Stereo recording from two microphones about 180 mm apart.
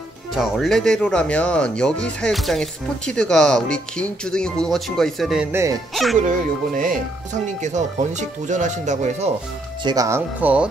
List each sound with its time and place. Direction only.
0.3 s speech: centre (ahead or behind)
5.5 s speech: 15° right (ahead or behind)
6.2 s speech: 50° right (ahead or behind)
9.8 s speech: 20° right (ahead or behind)